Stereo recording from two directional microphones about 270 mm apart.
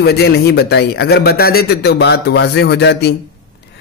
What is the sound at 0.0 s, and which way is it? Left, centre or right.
Speech, left.